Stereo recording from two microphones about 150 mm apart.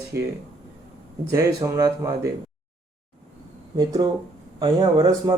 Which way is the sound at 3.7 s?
25° right (ahead or behind).